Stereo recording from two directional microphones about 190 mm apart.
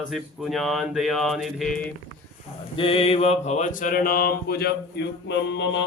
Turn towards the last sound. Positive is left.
turn(degrees=75)  # may be behind; listen again after turning